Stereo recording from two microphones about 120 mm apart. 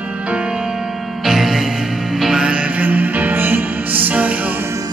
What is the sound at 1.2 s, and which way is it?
Music, 5° right (ahead or behind).